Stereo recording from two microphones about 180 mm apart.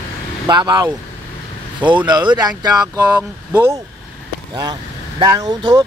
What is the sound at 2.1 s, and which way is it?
Speech, 25° right (ahead or behind).